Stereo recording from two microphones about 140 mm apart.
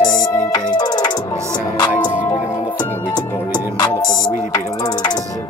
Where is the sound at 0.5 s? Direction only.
30° left (ahead or behind).